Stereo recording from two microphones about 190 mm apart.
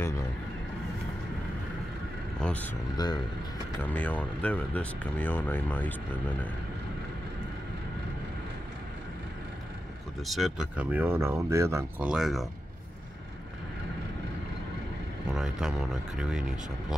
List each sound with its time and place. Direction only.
2.4 s speech: 10° left (ahead or behind)
3.0 s speech: 20° left (ahead or behind)
3.8 s speech: 10° left (ahead or behind)
10.2 s speech: centre (ahead or behind)
12.1 s speech: centre (ahead or behind)
15.3 s speech: 5° right (ahead or behind)